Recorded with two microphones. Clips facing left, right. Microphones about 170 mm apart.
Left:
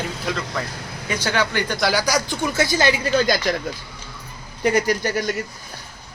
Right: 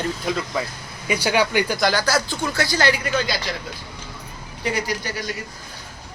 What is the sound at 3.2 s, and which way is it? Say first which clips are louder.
Speech: left 6 dB; 45° left (ahead or behind).